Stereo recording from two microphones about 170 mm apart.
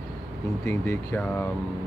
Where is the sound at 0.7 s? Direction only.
10° left (ahead or behind).